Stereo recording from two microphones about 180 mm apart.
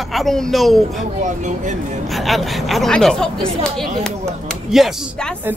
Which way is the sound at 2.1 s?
Centre (ahead or behind).